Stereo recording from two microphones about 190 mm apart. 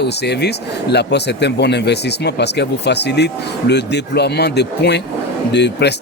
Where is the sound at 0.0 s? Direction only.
60° left (ahead or behind).